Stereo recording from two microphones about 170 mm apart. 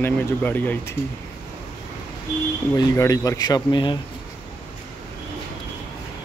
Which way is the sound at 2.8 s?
20° left (ahead or behind).